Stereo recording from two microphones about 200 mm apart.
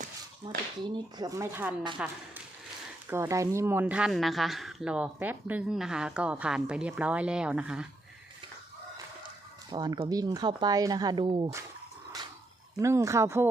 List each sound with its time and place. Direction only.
0.9 s speech: 20° right (ahead or behind)
9.6 s speech: 20° right (ahead or behind)
12.8 s speech: 15° right (ahead or behind)